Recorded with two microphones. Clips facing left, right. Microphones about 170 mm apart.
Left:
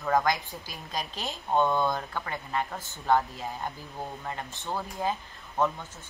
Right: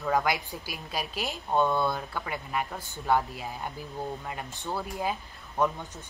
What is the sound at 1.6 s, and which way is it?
Speech, 15° left (ahead or behind).